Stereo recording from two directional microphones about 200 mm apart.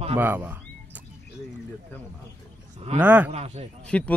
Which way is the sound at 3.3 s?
30° right (ahead or behind).